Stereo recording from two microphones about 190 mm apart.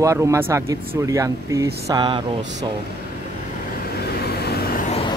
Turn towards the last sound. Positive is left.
turn(degrees=55)  # may be behind; listen again after turning